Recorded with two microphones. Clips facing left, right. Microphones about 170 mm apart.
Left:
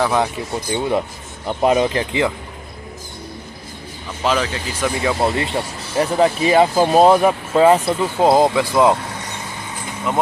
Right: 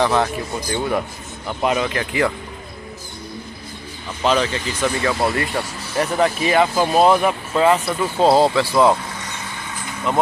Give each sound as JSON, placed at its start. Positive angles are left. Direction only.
{"t": 0.0, "sound": "speech", "side_deg": 10}
{"t": 0.7, "sound": "speech", "side_deg": 20}
{"t": 1.5, "sound": "speech", "side_deg": 35}
{"t": 4.2, "sound": "speech", "side_deg": 5}
{"t": 8.2, "sound": "speech", "side_deg": 15}